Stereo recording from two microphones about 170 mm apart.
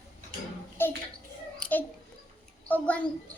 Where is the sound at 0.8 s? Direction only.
15° left (ahead or behind).